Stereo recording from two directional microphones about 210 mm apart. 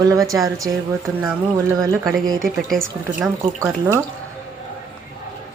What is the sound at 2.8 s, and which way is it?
Speech, 10° right (ahead or behind).